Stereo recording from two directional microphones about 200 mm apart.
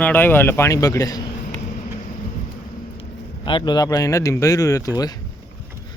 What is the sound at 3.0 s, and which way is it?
A man's voice, 25° left (ahead or behind).